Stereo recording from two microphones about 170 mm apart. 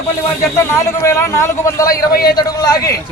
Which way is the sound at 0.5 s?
15° left (ahead or behind).